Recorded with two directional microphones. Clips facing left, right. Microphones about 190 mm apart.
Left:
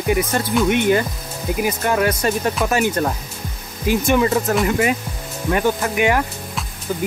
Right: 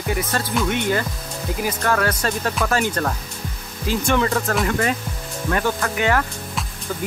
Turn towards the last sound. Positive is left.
turn(degrees=15)  # may be behind; listen again after turning